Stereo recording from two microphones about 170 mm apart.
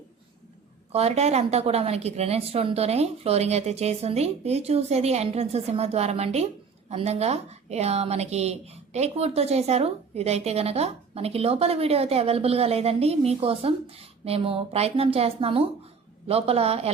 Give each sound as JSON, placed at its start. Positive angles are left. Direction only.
{"t": 0.9, "sound": "a woman's voice", "side_deg": -40}